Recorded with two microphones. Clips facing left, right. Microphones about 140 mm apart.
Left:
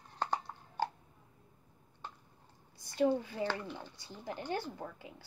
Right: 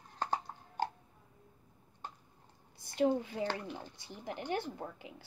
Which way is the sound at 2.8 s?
25° right (ahead or behind).